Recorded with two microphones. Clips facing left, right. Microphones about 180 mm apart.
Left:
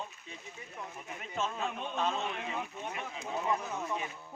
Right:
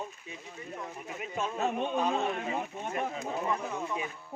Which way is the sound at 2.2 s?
45° right (ahead or behind).